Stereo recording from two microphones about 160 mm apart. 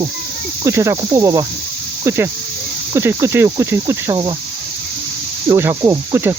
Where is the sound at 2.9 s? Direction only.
15° right (ahead or behind).